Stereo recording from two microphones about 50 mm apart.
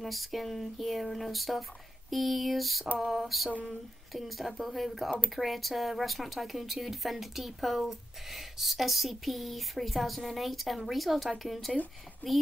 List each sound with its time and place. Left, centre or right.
0.0 s a woman's voice: centre